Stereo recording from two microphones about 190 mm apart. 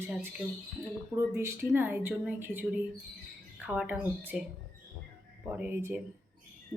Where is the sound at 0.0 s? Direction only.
10° right (ahead or behind).